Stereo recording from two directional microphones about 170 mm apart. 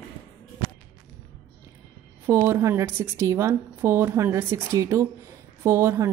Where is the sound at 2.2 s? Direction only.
15° right (ahead or behind).